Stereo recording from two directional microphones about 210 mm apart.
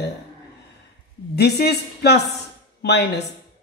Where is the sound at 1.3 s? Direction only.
50° left (ahead or behind).